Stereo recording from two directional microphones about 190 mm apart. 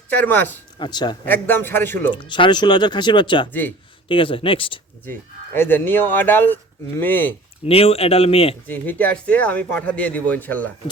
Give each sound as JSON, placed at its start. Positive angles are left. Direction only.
{"t": 0.1, "sound": "speech", "side_deg": 10}
{"t": 0.8, "sound": "speech", "side_deg": 20}
{"t": 1.2, "sound": "speech", "side_deg": 10}
{"t": 2.1, "sound": "speech", "side_deg": 25}
{"t": 5.5, "sound": "speech", "side_deg": 10}
{"t": 7.6, "sound": "speech", "side_deg": 30}
{"t": 8.6, "sound": "speech", "side_deg": 10}